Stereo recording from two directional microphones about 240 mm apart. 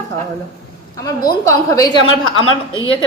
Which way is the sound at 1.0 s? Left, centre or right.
Centre.